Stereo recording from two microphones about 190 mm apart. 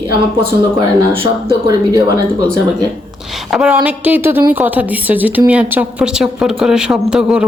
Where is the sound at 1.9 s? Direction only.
20° right (ahead or behind).